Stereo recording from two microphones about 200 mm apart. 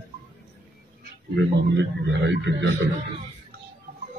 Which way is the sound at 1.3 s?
60° right (ahead or behind).